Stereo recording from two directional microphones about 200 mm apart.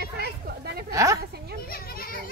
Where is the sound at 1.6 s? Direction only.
50° left (ahead or behind).